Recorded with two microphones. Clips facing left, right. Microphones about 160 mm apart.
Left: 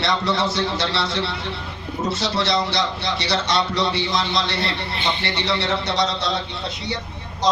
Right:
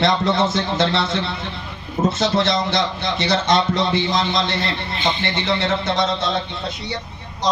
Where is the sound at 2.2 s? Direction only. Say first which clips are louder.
Right 1 dB; 50° right (ahead or behind).